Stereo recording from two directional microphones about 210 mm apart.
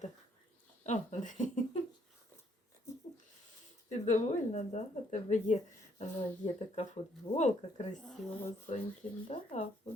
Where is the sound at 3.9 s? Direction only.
35° left (ahead or behind).